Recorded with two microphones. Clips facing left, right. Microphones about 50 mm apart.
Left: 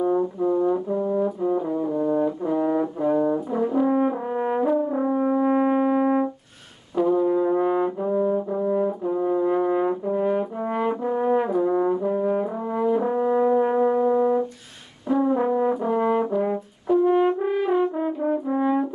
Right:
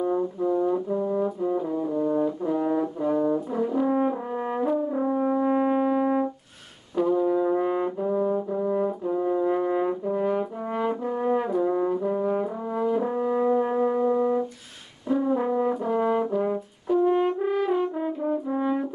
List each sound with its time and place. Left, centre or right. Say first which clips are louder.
0.0 s brass instrument: left 3 dB; centre
16.8 s french horn: left 3 dB; centre
18.2 s brass instrument: left 3 dB; centre